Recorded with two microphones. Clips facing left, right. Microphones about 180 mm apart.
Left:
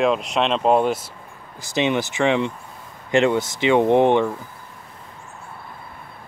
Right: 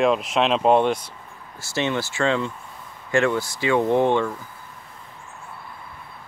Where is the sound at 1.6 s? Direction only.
15° left (ahead or behind).